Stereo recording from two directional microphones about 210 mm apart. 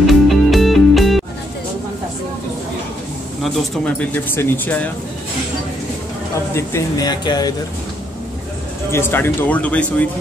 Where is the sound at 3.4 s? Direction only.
5° left (ahead or behind).